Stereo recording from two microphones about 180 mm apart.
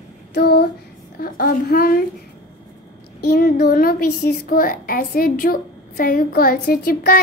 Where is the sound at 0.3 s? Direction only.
60° left (ahead or behind).